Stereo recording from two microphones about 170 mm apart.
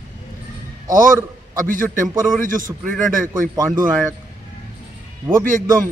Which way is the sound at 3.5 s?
20° right (ahead or behind).